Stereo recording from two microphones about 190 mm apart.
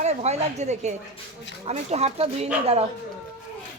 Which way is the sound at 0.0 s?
35° right (ahead or behind).